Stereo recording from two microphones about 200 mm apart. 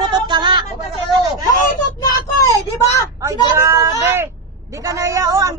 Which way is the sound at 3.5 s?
15° right (ahead or behind).